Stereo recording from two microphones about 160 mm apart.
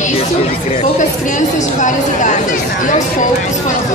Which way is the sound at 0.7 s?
50° left (ahead or behind).